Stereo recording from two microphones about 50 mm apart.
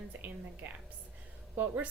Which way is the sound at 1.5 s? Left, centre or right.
Right.